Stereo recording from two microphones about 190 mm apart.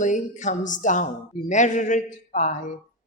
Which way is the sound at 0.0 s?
40° left (ahead or behind).